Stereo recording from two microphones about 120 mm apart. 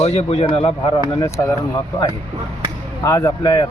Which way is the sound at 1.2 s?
30° left (ahead or behind).